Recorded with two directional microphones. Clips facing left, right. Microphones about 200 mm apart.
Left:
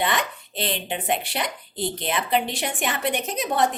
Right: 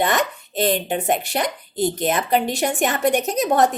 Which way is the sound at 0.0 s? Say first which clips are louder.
Right 5 dB; 45° right (ahead or behind).